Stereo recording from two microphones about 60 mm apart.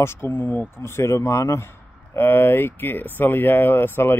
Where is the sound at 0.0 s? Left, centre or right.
Left.